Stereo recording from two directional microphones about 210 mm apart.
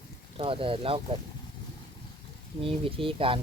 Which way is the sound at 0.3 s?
25° right (ahead or behind).